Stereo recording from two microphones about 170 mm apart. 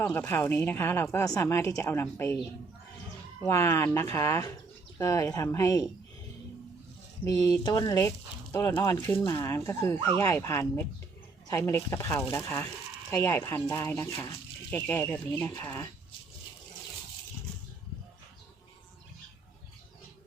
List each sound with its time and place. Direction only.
0.0 s speech: 10° left (ahead or behind)
7.3 s speech: 20° left (ahead or behind)